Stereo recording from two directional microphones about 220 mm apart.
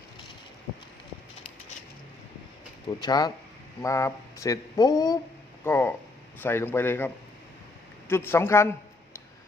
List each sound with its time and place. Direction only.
3.0 s speech: 20° left (ahead or behind)